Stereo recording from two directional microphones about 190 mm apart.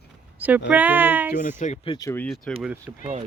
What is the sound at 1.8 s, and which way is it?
Speech, 25° left (ahead or behind).